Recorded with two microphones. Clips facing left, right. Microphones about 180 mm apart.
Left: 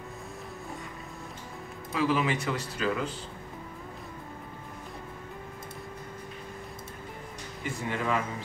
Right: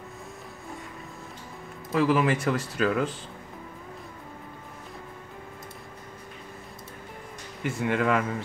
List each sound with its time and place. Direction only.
2.0 s speech: 50° right (ahead or behind)
7.6 s speech: 60° right (ahead or behind)